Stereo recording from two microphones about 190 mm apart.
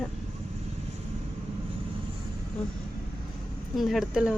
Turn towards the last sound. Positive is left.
turn(degrees=-5)  # may be behind; listen again after turning